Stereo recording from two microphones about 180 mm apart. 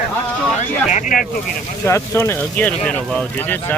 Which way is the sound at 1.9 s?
15° left (ahead or behind).